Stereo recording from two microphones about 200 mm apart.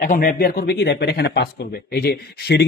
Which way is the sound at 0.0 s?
45° left (ahead or behind).